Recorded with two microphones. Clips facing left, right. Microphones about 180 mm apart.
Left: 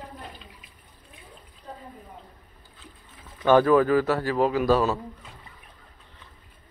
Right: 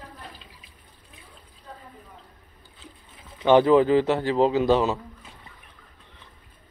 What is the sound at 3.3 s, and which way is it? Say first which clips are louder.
A man's voice: right 1 dB; 20° right (ahead or behind).